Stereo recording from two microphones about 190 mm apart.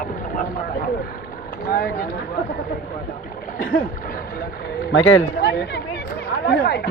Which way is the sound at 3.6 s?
45° left (ahead or behind).